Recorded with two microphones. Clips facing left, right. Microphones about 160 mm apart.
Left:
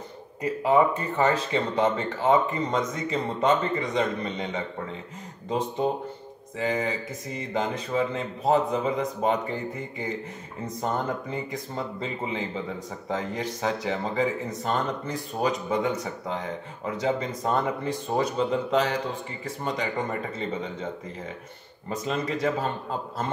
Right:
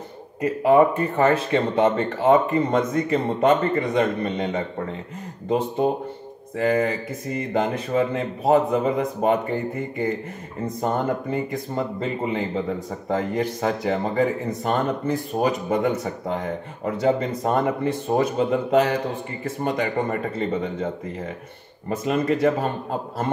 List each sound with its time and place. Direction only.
0.4 s speech: 55° right (ahead or behind)
6.5 s speech: 55° right (ahead or behind)